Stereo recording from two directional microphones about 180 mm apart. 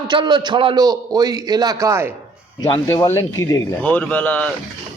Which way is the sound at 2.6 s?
15° left (ahead or behind).